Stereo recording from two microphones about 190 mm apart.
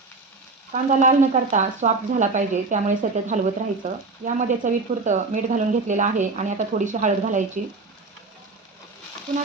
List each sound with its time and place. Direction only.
0.7 s speech: 40° right (ahead or behind)